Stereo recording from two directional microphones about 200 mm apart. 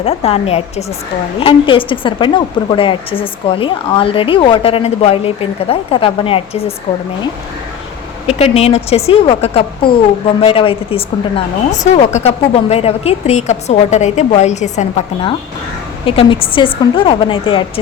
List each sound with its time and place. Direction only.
0.0 s a woman's voice: 30° left (ahead or behind)
8.3 s a woman's voice: 30° left (ahead or behind)